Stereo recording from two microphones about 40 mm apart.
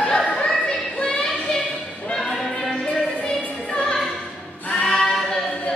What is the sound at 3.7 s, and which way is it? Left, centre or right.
Music, centre.